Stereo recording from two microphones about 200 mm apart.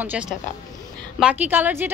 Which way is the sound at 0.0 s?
10° right (ahead or behind).